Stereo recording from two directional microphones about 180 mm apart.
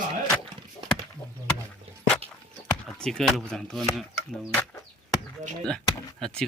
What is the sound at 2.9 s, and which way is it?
Speech, 5° left (ahead or behind).